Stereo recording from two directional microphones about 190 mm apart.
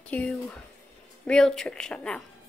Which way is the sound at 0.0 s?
5° left (ahead or behind).